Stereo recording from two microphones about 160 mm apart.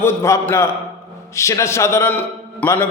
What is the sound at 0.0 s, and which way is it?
A man's voice, 15° left (ahead or behind).